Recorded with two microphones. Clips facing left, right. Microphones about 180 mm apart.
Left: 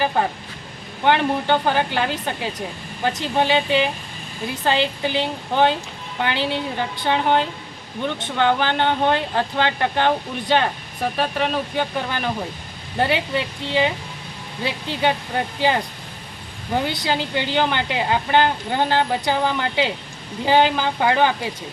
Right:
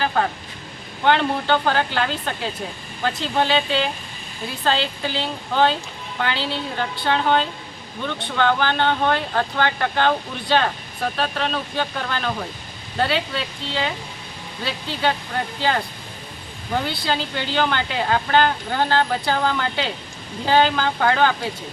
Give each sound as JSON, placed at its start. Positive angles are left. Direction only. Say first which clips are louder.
{"t": 1.0, "sound": "speech", "louder": "left 1 dB", "side_deg": 15}
{"t": 16.7, "sound": "speech", "louder": "left 1 dB", "side_deg": 15}